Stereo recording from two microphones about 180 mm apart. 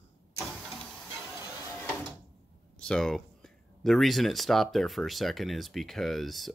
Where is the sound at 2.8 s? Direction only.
5° left (ahead or behind).